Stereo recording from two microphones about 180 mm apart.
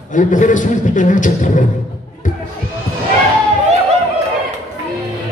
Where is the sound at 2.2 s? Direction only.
45° left (ahead or behind).